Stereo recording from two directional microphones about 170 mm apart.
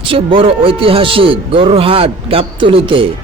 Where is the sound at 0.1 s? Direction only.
30° right (ahead or behind).